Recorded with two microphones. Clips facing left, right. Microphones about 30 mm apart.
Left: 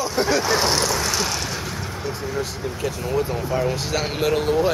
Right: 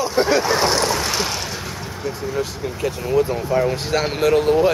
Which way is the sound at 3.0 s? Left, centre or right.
Centre.